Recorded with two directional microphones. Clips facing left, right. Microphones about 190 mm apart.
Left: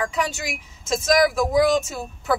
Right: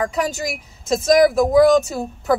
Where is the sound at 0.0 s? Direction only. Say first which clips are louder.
Right 4 dB; 40° right (ahead or behind).